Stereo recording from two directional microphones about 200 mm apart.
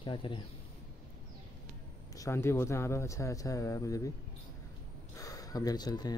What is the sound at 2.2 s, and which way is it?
Speech, 15° left (ahead or behind).